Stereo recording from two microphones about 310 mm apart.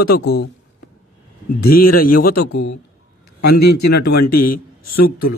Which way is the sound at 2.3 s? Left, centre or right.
Left.